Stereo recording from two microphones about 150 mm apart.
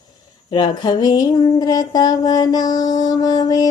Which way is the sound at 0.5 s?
30° left (ahead or behind).